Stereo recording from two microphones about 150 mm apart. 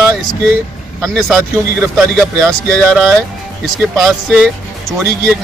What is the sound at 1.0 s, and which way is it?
Speech, centre (ahead or behind).